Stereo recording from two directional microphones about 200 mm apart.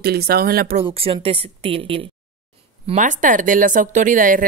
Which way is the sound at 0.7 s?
30° right (ahead or behind).